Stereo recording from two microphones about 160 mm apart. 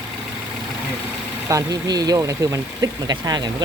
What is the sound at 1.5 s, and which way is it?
Speech, 20° right (ahead or behind).